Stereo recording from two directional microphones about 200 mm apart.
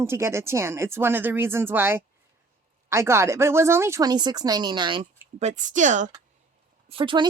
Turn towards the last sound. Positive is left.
turn(degrees=-25)  # may be behind; listen again after turning